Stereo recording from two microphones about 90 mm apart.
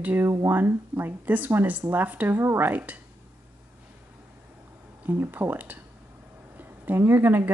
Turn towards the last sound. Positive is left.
turn(degrees=-20)  # may be behind; listen again after turning